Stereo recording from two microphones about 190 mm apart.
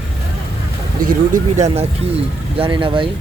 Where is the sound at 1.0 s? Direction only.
45° right (ahead or behind).